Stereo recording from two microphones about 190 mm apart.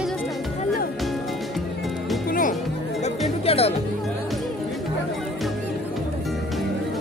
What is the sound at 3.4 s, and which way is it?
Music, 30° left (ahead or behind).